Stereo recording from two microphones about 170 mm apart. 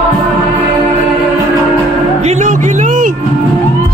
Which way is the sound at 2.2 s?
45° right (ahead or behind).